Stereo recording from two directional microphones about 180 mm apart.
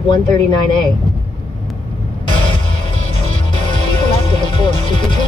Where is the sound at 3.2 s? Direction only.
30° left (ahead or behind).